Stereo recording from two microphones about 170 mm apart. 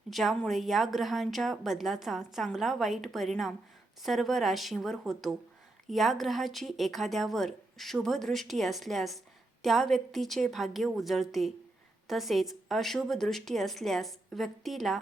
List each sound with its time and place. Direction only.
0.1 s a woman's voice: centre (ahead or behind)